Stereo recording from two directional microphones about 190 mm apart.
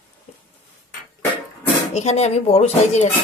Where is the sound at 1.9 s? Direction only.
35° left (ahead or behind).